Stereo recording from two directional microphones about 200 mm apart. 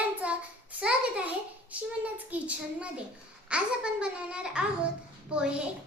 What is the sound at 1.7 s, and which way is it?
A woman's voice, 5° right (ahead or behind).